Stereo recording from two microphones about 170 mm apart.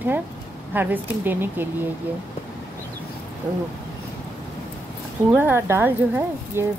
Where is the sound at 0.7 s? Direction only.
10° right (ahead or behind).